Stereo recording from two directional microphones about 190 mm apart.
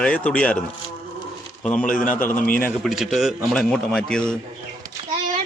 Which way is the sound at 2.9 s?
Centre (ahead or behind).